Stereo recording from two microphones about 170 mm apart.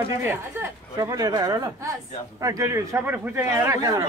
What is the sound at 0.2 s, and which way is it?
A man's voice, 10° right (ahead or behind).